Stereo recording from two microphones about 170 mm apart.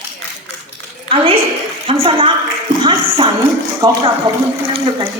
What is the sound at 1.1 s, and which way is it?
A woman's voice, 35° right (ahead or behind).